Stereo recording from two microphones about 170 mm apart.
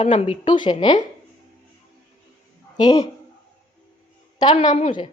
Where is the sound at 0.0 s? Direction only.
35° left (ahead or behind).